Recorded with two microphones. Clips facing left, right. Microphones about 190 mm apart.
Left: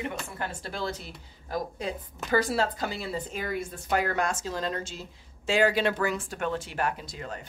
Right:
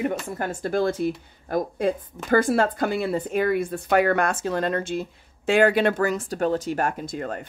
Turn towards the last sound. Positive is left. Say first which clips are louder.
# right 6 dB
turn(degrees=-50)  # may be behind; listen again after turning